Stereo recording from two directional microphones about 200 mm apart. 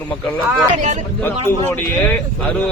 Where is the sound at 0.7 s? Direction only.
35° right (ahead or behind).